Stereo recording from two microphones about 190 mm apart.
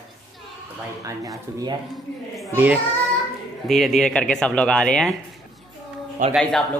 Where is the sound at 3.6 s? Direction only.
Centre (ahead or behind).